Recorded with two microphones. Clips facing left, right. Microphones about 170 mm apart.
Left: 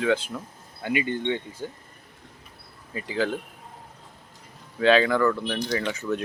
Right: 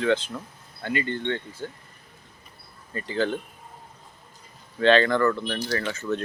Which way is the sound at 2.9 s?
5° left (ahead or behind).